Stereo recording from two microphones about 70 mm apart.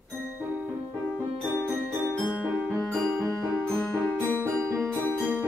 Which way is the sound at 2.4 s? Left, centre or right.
Right.